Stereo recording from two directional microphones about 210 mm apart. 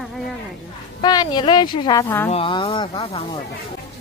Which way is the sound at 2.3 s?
25° left (ahead or behind).